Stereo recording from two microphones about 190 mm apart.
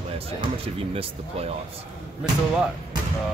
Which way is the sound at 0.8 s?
30° right (ahead or behind).